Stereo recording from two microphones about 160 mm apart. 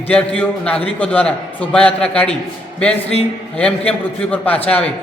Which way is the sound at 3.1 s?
40° left (ahead or behind).